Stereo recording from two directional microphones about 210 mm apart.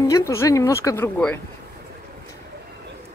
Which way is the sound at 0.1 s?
15° left (ahead or behind).